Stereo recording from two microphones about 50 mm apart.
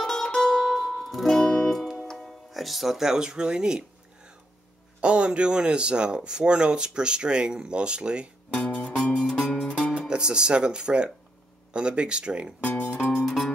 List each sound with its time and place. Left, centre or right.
0.0 s music: centre
5.0 s speech: right
8.5 s music: left
9.9 s speech: centre
12.6 s speech: left
13.2 s music: centre